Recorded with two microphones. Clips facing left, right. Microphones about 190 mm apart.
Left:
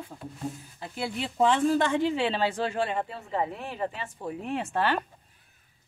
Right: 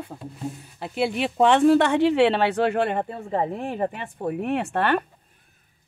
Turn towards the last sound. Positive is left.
turn(degrees=-60)  # may be behind; listen again after turning